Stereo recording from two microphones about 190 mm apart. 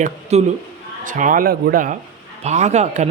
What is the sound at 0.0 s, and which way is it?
Speech, 35° right (ahead or behind).